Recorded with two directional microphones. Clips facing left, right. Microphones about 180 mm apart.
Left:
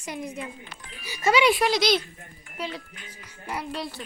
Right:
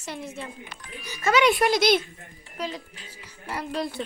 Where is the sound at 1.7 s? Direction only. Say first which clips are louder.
Right 2 dB; 50° right (ahead or behind).